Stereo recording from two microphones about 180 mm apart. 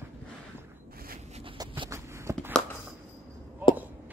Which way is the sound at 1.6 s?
25° right (ahead or behind).